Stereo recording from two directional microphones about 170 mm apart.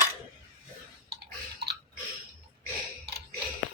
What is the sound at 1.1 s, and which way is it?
Chewing, 70° right (ahead or behind).